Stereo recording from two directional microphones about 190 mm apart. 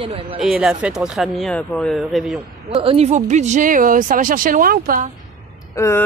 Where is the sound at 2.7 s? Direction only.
30° right (ahead or behind); by 5.1 s 50° right (ahead or behind).